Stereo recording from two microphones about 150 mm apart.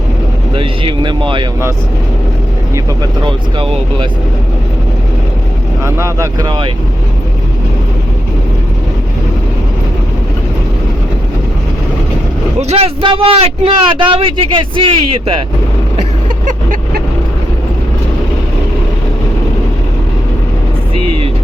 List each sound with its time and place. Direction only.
0.5 s a man's voice: 35° right (ahead or behind)
3.2 s a man's voice: 35° right (ahead or behind)
5.8 s speech: 20° right (ahead or behind)
12.5 s a man's voice: 45° right (ahead or behind)
16.5 s vehicle: 60° right (ahead or behind)